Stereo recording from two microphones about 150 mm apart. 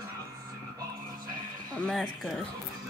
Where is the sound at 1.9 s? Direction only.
Centre (ahead or behind).